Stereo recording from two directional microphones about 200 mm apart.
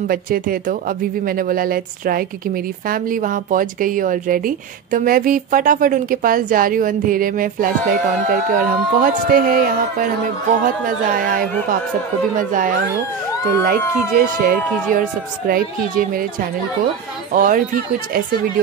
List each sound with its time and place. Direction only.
0.1 s speech: 45° right (ahead or behind)
12.4 s speech: 45° right (ahead or behind)